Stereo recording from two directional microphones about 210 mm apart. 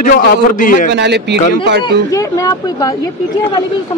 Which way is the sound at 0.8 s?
55° right (ahead or behind).